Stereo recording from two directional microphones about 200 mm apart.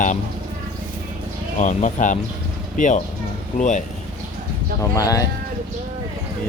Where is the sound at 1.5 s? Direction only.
35° left (ahead or behind).